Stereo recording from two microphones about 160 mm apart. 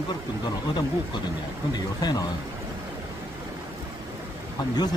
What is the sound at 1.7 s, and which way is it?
Speech, 25° left (ahead or behind).